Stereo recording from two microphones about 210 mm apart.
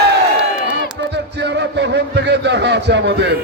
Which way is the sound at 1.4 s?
55° right (ahead or behind).